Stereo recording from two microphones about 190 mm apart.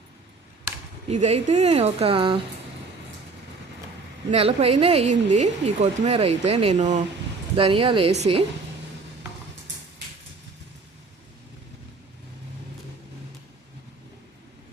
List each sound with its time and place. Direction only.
1.1 s speech: 40° right (ahead or behind)
4.3 s speech: 30° right (ahead or behind)
7.5 s speech: 30° right (ahead or behind)